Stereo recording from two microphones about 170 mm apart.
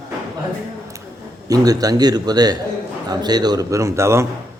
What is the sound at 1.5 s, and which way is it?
A man's voice, 20° right (ahead or behind).